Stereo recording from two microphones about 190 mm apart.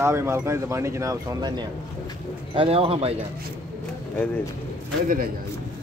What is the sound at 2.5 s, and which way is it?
Speech, 30° right (ahead or behind).